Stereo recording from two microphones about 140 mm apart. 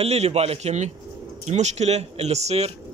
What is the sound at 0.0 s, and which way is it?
A man's voice, 50° right (ahead or behind).